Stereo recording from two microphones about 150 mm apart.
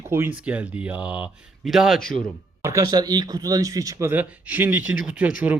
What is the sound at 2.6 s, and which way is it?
Speech, 25° right (ahead or behind).